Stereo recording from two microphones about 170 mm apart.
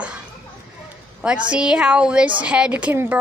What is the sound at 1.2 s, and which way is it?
Speech, 5° right (ahead or behind).